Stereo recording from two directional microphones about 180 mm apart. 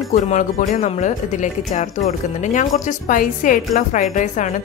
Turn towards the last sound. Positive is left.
turn(degrees=40)  # may be behind; listen again after turning